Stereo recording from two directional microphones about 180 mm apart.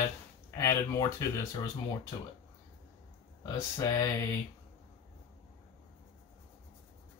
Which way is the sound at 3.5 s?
20° left (ahead or behind).